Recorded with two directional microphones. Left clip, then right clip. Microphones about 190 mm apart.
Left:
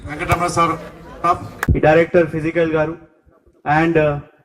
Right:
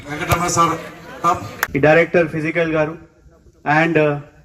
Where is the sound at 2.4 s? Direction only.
65° left (ahead or behind).